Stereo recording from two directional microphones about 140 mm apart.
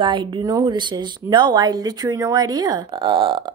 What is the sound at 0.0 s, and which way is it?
A woman's voice, 35° right (ahead or behind).